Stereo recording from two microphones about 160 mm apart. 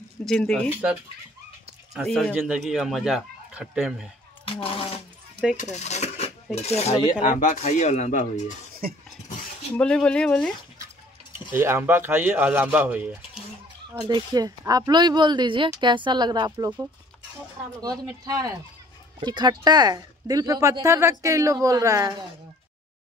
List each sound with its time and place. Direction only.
0.2 s speech: 5° left (ahead or behind)
2.0 s speech: 5° left (ahead or behind)
2.3 s speech: 5° right (ahead or behind)
4.5 s speech: 35° left (ahead or behind)
5.6 s mechanisms: 45° left (ahead or behind)
7.0 s speech: 30° left (ahead or behind)
7.3 s speech: 50° left (ahead or behind)
8.8 s a sound: 65° right (ahead or behind)
9.8 s speech: 5° left (ahead or behind)
11.5 s speech: 15° right (ahead or behind)
13.9 s speech: 25° right (ahead or behind)
18.2 s speech: 20° right (ahead or behind)